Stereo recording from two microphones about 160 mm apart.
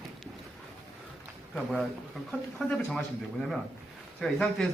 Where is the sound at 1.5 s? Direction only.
Centre (ahead or behind).